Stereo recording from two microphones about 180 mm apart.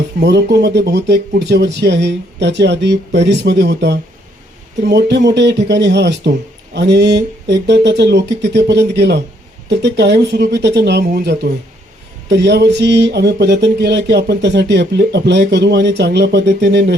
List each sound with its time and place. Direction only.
0.2 s speech: 70° right (ahead or behind)